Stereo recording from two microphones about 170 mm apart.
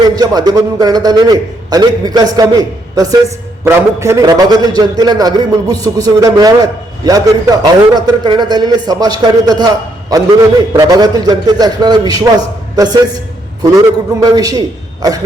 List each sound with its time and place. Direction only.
0.2 s a man's voice: 20° right (ahead or behind)